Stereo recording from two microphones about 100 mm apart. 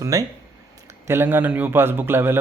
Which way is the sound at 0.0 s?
35° right (ahead or behind).